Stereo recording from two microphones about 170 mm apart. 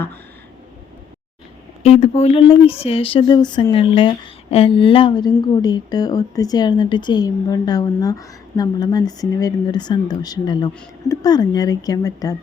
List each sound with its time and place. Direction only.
1.8 s a woman's voice: 40° left (ahead or behind); by 12.4 s 20° left (ahead or behind)